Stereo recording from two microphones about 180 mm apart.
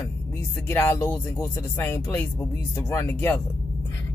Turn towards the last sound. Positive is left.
turn(degrees=10)  # may be behind; listen again after turning